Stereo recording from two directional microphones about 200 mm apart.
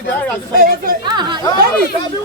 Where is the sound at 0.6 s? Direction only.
45° right (ahead or behind).